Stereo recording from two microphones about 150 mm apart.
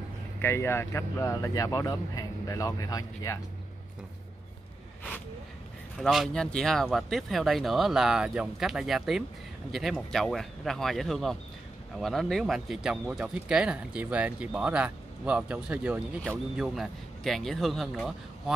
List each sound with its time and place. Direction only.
0.4 s speech: 15° left (ahead or behind)
5.9 s speech: centre (ahead or behind)